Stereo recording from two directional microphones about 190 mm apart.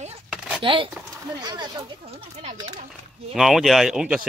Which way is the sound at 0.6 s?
25° right (ahead or behind).